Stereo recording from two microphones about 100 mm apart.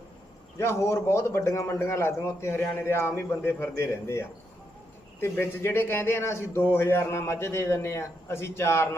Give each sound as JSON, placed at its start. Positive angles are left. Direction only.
{"t": 0.6, "sound": "a man's voice", "side_deg": 25}